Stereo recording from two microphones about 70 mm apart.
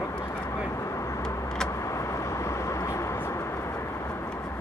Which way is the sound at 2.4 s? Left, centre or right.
Left.